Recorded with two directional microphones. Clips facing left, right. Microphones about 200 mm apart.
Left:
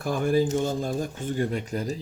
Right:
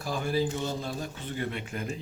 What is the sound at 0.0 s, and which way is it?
Speech, 55° left (ahead or behind).